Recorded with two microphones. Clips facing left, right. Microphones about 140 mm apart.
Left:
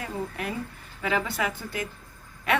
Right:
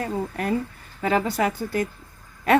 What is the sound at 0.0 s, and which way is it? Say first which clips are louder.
A woman's voice: right 5 dB; 40° right (ahead or behind).